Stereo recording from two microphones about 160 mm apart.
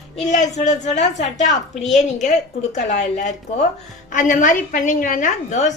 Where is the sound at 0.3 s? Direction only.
50° left (ahead or behind).